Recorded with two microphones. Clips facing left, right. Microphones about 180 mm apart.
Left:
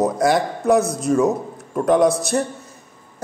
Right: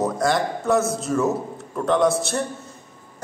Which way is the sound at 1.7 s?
20° left (ahead or behind).